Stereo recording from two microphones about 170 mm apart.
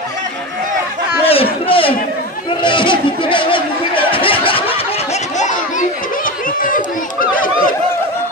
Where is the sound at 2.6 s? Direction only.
30° left (ahead or behind); by 7.2 s 55° left (ahead or behind).